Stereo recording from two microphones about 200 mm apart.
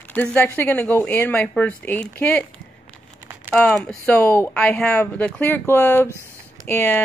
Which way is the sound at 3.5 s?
5° left (ahead or behind).